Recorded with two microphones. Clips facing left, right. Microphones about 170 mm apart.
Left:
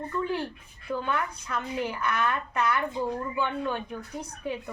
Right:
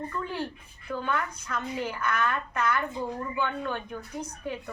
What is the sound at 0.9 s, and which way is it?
A woman's voice, 15° left (ahead or behind).